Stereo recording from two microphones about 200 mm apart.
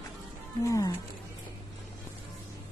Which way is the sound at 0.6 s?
15° left (ahead or behind).